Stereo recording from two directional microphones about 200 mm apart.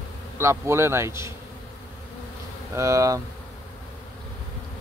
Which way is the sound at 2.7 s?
15° right (ahead or behind).